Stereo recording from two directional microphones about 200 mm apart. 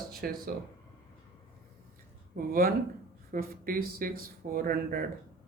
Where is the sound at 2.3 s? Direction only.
45° right (ahead or behind).